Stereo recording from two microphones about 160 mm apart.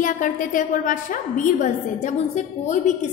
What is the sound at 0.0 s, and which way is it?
A woman's voice, 55° left (ahead or behind).